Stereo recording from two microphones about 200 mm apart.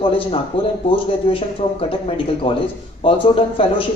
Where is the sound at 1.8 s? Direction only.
25° left (ahead or behind).